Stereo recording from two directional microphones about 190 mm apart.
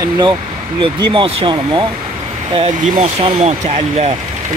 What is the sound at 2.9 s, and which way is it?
Speech, 35° right (ahead or behind).